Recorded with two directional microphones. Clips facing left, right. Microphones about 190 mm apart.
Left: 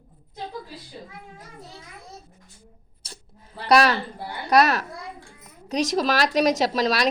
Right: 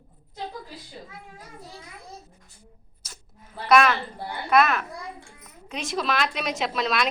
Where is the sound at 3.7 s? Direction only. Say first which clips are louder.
Left 1 dB; 35° left (ahead or behind).